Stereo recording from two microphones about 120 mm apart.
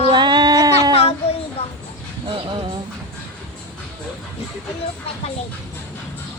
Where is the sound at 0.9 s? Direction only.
55° left (ahead or behind).